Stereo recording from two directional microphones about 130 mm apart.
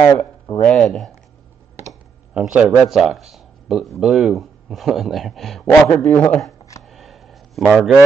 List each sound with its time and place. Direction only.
0.0 s speech: 20° left (ahead or behind)
0.7 s speech: 5° left (ahead or behind)
2.3 s speech: 5° right (ahead or behind); by 6.5 s 10° left (ahead or behind)
6.8 s a sound: centre (ahead or behind)